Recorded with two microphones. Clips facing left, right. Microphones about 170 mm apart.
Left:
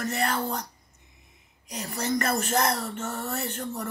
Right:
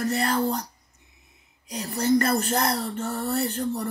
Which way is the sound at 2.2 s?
35° right (ahead or behind).